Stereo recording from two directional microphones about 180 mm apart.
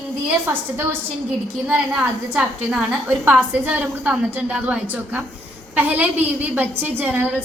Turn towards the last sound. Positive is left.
turn(degrees=-10)  # may be behind; listen again after turning